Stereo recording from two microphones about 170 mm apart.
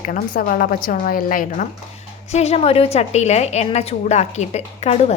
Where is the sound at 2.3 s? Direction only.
40° left (ahead or behind).